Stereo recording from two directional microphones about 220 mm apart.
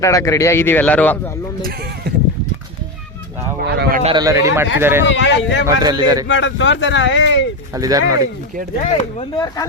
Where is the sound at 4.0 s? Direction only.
25° right (ahead or behind).